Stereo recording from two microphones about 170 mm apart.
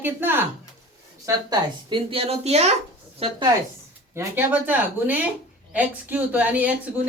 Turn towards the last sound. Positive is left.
turn(degrees=-10)  # may be behind; listen again after turning